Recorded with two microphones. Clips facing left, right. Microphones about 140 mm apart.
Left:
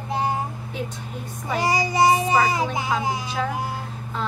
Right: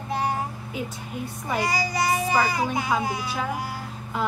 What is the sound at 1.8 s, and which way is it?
Child singing, 25° left (ahead or behind).